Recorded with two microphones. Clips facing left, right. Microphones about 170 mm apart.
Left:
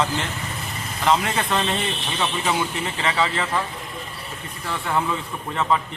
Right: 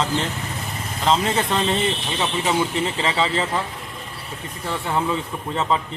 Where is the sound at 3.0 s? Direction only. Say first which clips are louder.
Left 1 dB; 25° right (ahead or behind).